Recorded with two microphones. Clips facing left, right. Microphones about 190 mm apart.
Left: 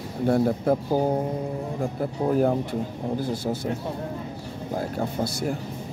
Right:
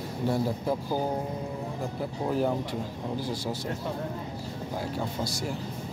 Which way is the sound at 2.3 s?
50° left (ahead or behind).